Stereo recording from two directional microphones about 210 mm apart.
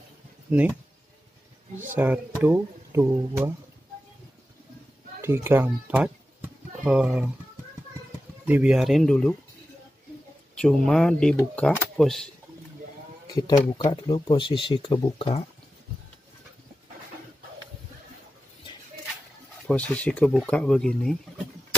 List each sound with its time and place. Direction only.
0.5 s speech: 5° right (ahead or behind)
2.0 s speech: 10° right (ahead or behind)
5.2 s speech: 10° right (ahead or behind)
8.5 s speech: 5° right (ahead or behind)
10.6 s speech: centre (ahead or behind)
13.3 s speech: 20° left (ahead or behind)
19.7 s speech: 5° left (ahead or behind)